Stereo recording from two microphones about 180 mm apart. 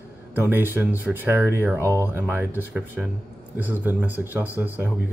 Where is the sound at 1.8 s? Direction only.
15° left (ahead or behind).